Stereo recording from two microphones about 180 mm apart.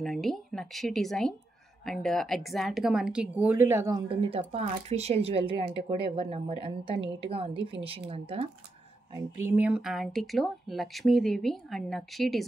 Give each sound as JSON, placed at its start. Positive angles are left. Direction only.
{"t": 0.0, "sound": "speech", "side_deg": 0}
{"t": 4.1, "sound": "a woman's voice", "side_deg": -30}
{"t": 9.1, "sound": "speech", "side_deg": -10}